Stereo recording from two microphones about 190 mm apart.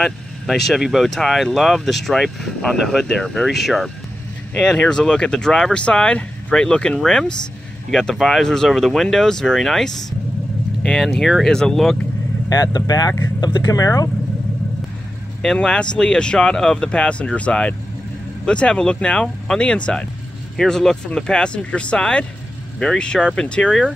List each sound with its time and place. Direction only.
0.7 s speech: centre (ahead or behind)
12.4 s speech: 20° left (ahead or behind)
15.4 s speech: 5° left (ahead or behind)